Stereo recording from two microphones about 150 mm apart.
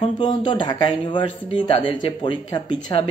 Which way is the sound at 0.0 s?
30° left (ahead or behind).